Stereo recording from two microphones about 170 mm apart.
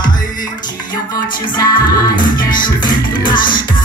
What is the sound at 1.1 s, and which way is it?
Music, 25° left (ahead or behind).